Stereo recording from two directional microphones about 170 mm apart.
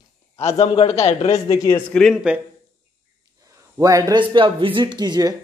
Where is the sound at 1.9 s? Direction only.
Centre (ahead or behind).